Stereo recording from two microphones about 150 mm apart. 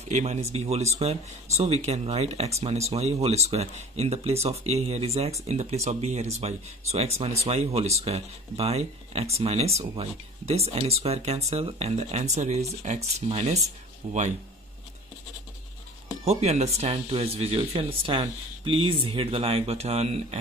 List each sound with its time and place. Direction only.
0.1 s speech: 45° right (ahead or behind)
16.3 s speech: 45° right (ahead or behind)